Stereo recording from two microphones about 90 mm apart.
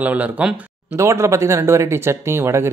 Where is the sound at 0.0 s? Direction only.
15° right (ahead or behind).